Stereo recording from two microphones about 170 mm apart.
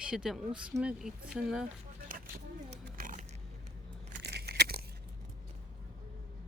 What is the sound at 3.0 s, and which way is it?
Biting, 50° right (ahead or behind).